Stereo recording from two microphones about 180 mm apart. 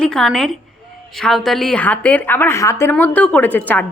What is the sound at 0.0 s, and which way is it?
A woman's voice, centre (ahead or behind).